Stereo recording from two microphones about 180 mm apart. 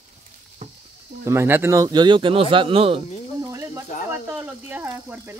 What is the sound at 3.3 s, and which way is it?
Snake, 15° right (ahead or behind).